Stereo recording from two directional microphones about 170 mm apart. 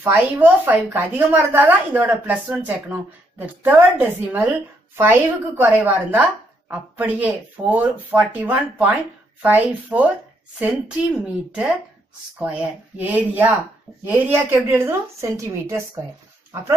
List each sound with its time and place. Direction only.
0.0 s a woman's voice: 10° right (ahead or behind)